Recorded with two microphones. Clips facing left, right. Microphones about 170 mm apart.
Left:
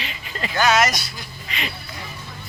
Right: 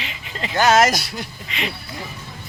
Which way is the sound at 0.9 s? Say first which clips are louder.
Right 5 dB; 65° right (ahead or behind).